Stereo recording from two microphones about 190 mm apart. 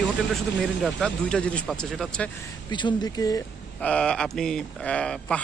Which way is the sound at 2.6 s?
25° left (ahead or behind).